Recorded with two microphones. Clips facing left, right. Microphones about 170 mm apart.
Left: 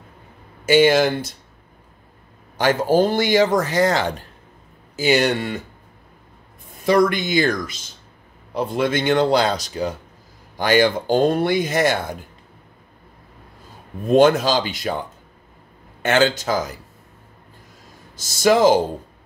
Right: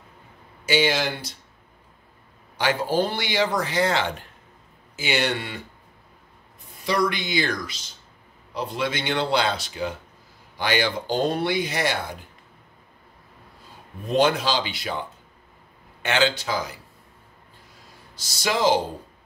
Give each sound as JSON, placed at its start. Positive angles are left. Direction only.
{"t": 0.7, "sound": "a man's voice", "side_deg": 50}
{"t": 2.5, "sound": "a man's voice", "side_deg": 45}
{"t": 6.8, "sound": "a man's voice", "side_deg": 50}
{"t": 14.0, "sound": "a man's voice", "side_deg": 50}
{"t": 16.0, "sound": "a man's voice", "side_deg": 45}
{"t": 18.1, "sound": "a man's voice", "side_deg": 50}